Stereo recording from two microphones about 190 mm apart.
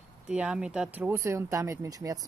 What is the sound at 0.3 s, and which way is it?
Speech, 5° right (ahead or behind).